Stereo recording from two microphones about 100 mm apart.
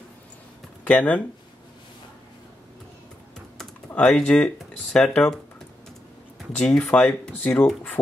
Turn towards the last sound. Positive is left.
turn(degrees=10)  # may be behind; listen again after turning